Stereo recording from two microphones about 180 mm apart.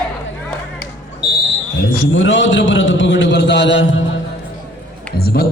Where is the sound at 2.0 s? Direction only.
90° left.